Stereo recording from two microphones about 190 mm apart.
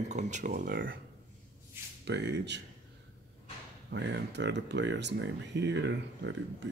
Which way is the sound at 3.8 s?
65° right (ahead or behind).